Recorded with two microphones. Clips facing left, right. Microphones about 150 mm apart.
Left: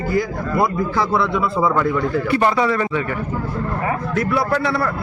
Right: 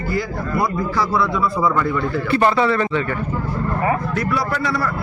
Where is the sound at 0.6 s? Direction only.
25° left (ahead or behind).